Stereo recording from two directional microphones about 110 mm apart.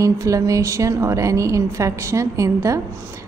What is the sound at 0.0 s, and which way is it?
A woman's voice, 30° right (ahead or behind).